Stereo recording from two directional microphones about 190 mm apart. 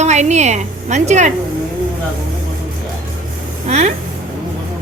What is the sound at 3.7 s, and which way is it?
Speech, 35° right (ahead or behind).